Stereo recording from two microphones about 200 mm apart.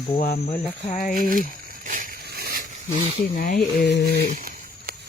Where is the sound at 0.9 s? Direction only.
40° left (ahead or behind).